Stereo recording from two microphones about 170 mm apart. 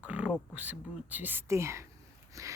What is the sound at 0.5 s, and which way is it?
Speech, 10° right (ahead or behind).